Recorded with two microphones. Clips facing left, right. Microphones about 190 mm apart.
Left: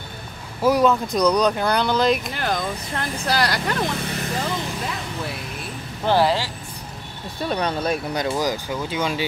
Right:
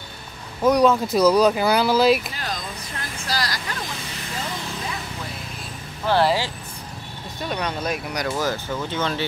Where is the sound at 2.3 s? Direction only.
60° left (ahead or behind).